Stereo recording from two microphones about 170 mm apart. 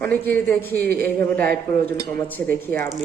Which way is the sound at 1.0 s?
10° left (ahead or behind).